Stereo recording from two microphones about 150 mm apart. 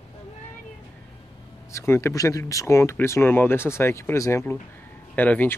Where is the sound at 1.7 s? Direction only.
20° left (ahead or behind).